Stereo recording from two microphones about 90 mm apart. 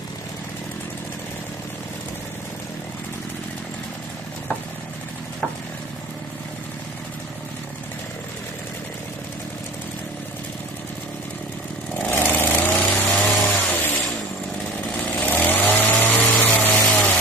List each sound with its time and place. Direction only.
12.1 s vehicle: 25° left (ahead or behind)
15.1 s chainsaw: 20° left (ahead or behind)